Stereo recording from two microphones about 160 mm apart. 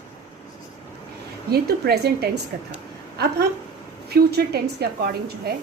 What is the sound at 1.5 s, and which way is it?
Speech, 85° right.